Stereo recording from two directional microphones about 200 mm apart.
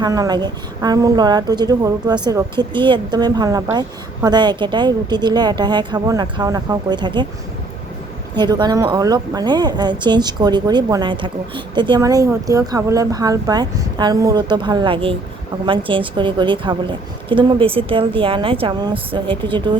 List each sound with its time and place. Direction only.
0.0 s a woman's voice: 20° right (ahead or behind)
8.4 s a woman's voice: 20° right (ahead or behind)